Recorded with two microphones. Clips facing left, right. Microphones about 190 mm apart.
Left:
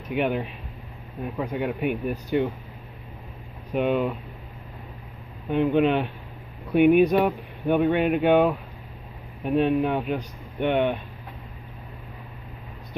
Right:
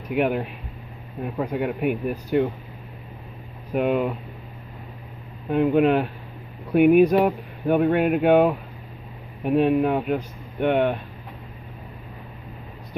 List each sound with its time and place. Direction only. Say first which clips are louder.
0.1 s speech: right 2 dB; 5° right (ahead or behind)
3.7 s speech: right 1 dB; 5° right (ahead or behind)
5.5 s speech: right 2 dB; 5° right (ahead or behind)